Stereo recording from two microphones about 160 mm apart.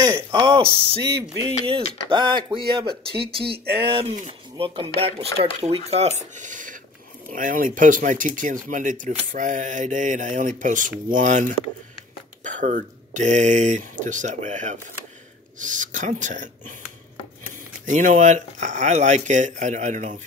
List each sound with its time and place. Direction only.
0.0 s speech: 30° right (ahead or behind)
2.0 s speech: 30° right (ahead or behind)
4.6 s speech: 35° right (ahead or behind); by 16.7 s 55° right (ahead or behind)
17.8 s speech: 50° right (ahead or behind)